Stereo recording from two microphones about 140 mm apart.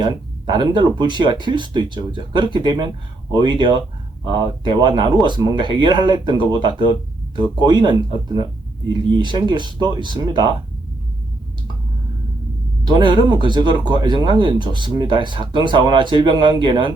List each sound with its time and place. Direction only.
0.0 s speech: 35° right (ahead or behind)
12.9 s speech: 35° right (ahead or behind)